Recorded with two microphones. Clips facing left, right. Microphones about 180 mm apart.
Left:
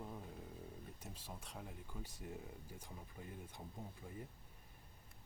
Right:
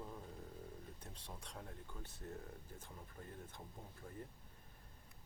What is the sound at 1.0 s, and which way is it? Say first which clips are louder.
Speech: left 1 dB; 5° left (ahead or behind).